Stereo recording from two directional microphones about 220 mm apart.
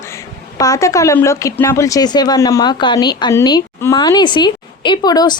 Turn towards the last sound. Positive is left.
turn(degrees=20)  # may be behind; listen again after turning